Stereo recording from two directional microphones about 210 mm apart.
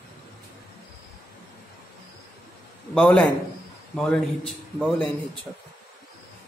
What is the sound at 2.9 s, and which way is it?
A man's voice, 5° left (ahead or behind).